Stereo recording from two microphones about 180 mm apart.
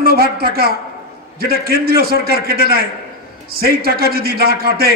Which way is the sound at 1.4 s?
60° right (ahead or behind).